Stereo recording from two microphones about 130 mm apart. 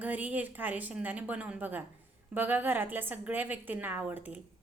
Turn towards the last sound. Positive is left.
turn(degrees=-15)  # may be behind; listen again after turning